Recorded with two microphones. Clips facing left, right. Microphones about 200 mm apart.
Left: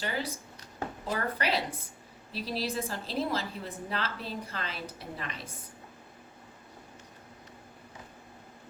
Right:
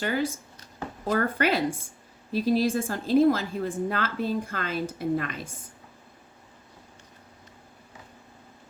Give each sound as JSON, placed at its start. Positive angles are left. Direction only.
{"t": 0.0, "sound": "a woman's voice", "side_deg": -50}